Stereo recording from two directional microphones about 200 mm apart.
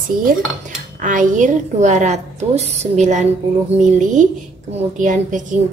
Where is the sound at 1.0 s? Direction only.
40° right (ahead or behind).